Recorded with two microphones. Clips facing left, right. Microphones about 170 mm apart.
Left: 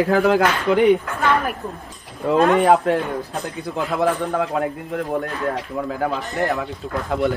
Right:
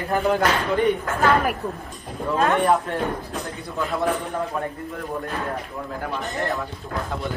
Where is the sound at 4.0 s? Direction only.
90° left.